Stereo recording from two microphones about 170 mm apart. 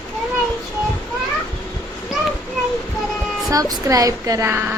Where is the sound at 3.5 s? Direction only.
20° right (ahead or behind).